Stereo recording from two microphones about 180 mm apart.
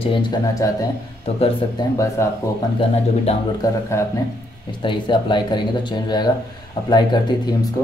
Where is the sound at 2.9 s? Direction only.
35° left (ahead or behind).